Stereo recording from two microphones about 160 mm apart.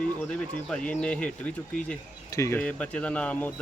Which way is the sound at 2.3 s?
15° left (ahead or behind).